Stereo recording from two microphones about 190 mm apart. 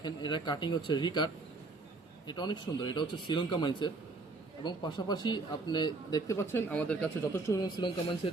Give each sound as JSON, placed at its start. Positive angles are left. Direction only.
{"t": 0.0, "sound": "speech", "side_deg": 25}